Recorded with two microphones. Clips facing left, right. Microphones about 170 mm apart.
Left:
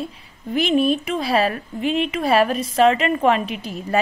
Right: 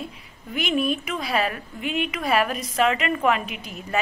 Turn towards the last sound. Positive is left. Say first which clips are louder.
# left 6 dB
turn(degrees=30)  # may be behind; listen again after turning